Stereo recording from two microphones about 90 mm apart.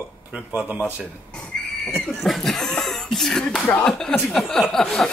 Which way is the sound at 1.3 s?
15° left (ahead or behind).